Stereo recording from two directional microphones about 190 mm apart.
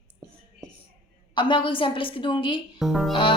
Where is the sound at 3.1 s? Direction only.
25° left (ahead or behind).